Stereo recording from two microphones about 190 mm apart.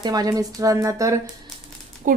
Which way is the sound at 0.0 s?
20° right (ahead or behind).